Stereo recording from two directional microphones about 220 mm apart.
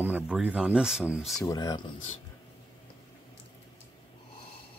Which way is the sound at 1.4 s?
15° left (ahead or behind).